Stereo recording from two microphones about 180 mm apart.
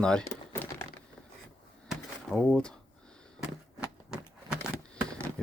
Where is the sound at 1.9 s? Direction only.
5° left (ahead or behind).